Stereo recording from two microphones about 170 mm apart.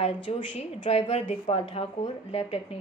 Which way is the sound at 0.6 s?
35° left (ahead or behind).